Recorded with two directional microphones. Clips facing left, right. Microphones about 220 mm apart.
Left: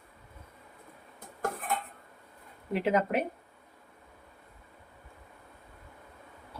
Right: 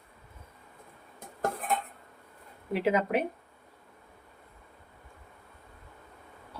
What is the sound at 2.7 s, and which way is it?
Speech, centre (ahead or behind).